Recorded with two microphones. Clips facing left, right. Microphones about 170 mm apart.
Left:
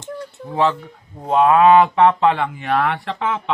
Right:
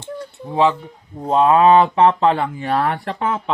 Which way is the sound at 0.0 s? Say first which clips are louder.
Even; 20° right (ahead or behind).